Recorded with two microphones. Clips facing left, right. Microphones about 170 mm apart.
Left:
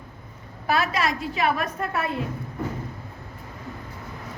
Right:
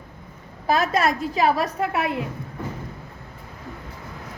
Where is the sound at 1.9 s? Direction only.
15° right (ahead or behind).